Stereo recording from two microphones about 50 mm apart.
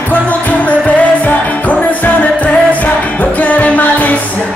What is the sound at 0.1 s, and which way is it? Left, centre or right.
Music, left.